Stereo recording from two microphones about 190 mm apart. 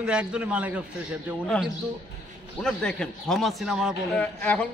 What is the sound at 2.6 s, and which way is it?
A man's voice, 5° left (ahead or behind).